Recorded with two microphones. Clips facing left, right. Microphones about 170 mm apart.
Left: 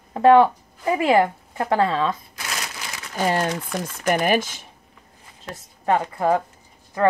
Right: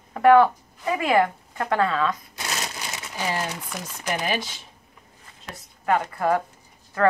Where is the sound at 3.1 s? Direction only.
55° left (ahead or behind).